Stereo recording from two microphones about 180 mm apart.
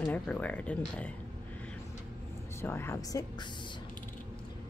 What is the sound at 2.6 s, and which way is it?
Speech, 15° left (ahead or behind).